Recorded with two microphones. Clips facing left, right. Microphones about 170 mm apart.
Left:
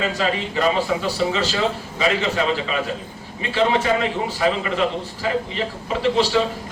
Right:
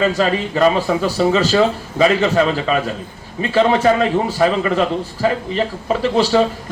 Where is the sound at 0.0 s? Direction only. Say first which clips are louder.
Right 6 dB; 45° right (ahead or behind).